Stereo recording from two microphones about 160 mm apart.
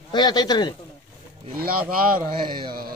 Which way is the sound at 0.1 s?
25° left (ahead or behind).